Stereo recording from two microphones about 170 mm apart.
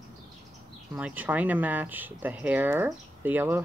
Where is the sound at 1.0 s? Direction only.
10° right (ahead or behind).